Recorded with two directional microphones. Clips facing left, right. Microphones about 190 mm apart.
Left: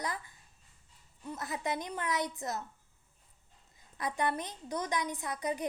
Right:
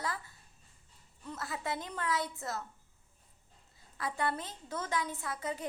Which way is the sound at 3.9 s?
20° left (ahead or behind).